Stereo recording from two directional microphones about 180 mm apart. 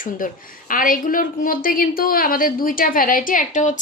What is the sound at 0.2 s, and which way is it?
A woman's voice, 50° left (ahead or behind).